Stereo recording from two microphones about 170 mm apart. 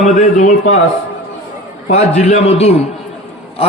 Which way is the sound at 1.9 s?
40° left (ahead or behind).